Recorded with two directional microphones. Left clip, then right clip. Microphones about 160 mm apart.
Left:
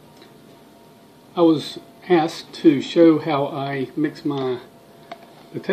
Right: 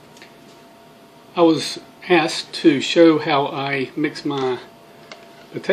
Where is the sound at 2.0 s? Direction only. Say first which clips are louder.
Right 2 dB; 15° left (ahead or behind).